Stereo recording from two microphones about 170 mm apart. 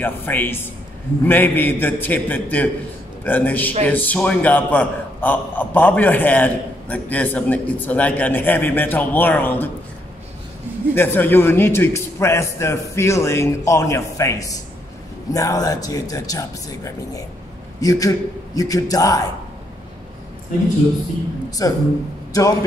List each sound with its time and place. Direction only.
0.0 s a man's voice: 10° left (ahead or behind)
11.0 s a man's voice: 10° left (ahead or behind)
21.5 s speech: 20° left (ahead or behind)